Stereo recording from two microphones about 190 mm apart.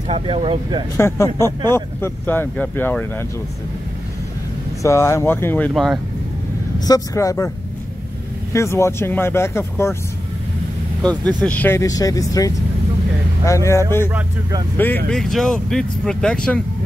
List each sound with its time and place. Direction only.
0.1 s speech: 30° right (ahead or behind)
0.9 s speech: 15° left (ahead or behind)
4.8 s speech: 15° left (ahead or behind)
5.7 s speech: centre (ahead or behind)
6.9 s speech: 15° left (ahead or behind)
8.5 s speech: 15° left (ahead or behind)
11.0 s speech: 5° left (ahead or behind)
15.0 s speech: centre (ahead or behind)